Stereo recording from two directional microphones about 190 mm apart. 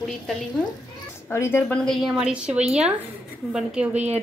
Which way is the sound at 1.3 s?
15° left (ahead or behind).